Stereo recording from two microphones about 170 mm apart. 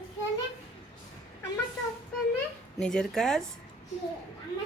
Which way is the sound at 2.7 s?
5° left (ahead or behind).